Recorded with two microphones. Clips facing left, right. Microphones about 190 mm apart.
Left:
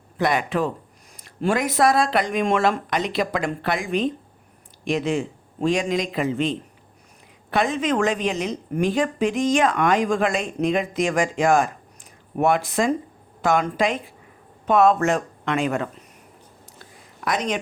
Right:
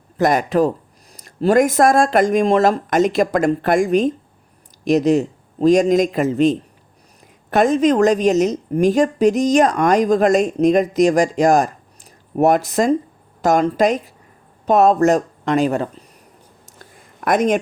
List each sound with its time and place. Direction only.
0.2 s a woman's voice: 40° right (ahead or behind)
17.2 s speech: 50° right (ahead or behind)